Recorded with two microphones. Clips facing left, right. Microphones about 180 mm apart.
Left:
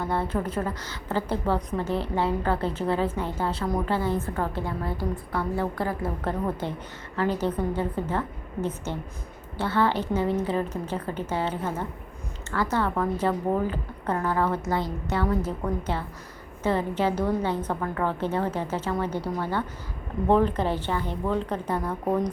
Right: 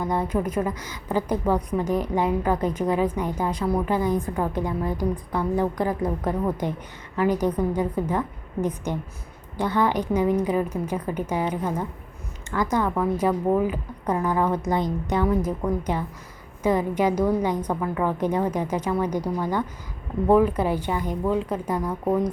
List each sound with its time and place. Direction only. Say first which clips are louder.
0.0 s a woman's voice: right 3 dB; 15° right (ahead or behind)